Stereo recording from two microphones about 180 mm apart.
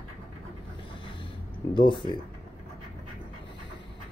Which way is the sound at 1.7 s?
25° left (ahead or behind).